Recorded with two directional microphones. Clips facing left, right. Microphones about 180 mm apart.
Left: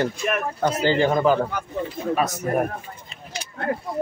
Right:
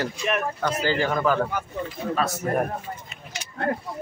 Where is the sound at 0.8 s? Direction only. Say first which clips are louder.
Left 5 dB; 25° left (ahead or behind).